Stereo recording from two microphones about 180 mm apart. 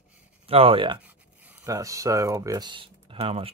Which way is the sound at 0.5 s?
30° right (ahead or behind).